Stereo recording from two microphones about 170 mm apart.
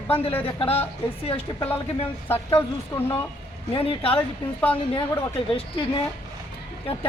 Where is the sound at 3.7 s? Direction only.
35° left (ahead or behind).